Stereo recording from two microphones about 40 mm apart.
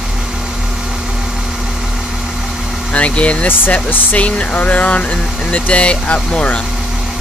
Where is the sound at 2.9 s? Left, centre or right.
Left.